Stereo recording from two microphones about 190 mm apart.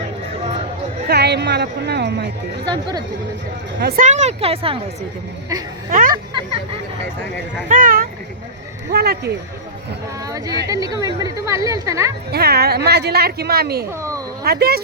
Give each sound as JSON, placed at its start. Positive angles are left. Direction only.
{"t": 1.0, "sound": "a woman's voice", "side_deg": -60}
{"t": 2.6, "sound": "speech", "side_deg": -25}
{"t": 3.8, "sound": "a woman's voice", "side_deg": -55}
{"t": 4.0, "sound": "a woman's voice", "side_deg": -40}
{"t": 5.9, "sound": "a sound", "side_deg": -45}
{"t": 7.7, "sound": "a woman's voice", "side_deg": -45}
{"t": 10.2, "sound": "a woman's voice", "side_deg": -20}
{"t": 12.3, "sound": "a woman's voice", "side_deg": -55}